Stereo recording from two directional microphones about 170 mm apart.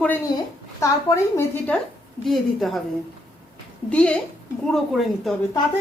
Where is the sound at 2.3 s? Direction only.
Centre (ahead or behind).